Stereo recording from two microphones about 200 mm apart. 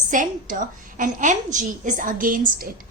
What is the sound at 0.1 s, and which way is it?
A woman's voice, 40° right (ahead or behind).